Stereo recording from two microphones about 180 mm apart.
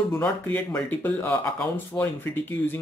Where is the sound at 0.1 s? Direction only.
10° left (ahead or behind).